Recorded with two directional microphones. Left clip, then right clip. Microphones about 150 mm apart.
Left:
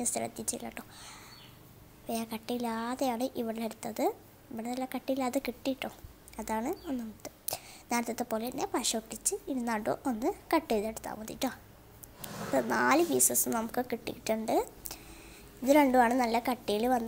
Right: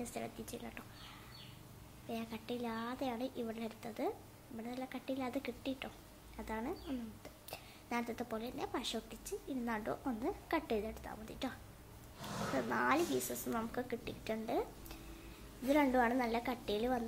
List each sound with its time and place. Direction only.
0.0 s a woman's voice: 45° left (ahead or behind)
2.0 s a woman's voice: 50° left (ahead or behind)
12.5 s a woman's voice: 45° left (ahead or behind)